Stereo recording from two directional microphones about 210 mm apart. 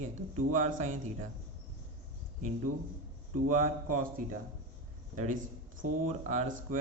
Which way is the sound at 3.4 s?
40° right (ahead or behind).